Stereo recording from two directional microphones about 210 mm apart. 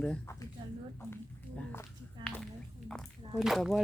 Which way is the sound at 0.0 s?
5° left (ahead or behind).